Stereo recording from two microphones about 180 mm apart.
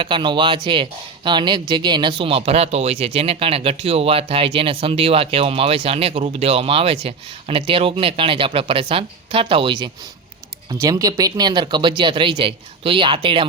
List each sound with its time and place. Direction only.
0.0 s speech: 25° right (ahead or behind)